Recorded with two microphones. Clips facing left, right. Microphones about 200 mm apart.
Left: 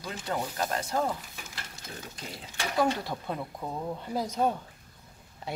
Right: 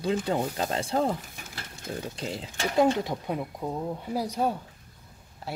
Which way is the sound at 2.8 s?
15° right (ahead or behind).